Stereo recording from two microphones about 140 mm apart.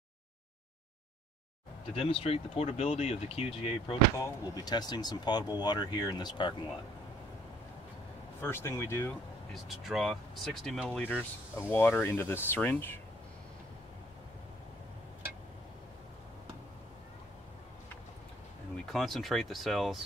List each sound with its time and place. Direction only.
2.0 s speech: 40° left (ahead or behind)
4.2 s speech: 30° left (ahead or behind)
8.4 s speech: 15° left (ahead or behind)
9.5 s speech: centre (ahead or behind); by 13.0 s 15° left (ahead or behind)
18.9 s speech: centre (ahead or behind)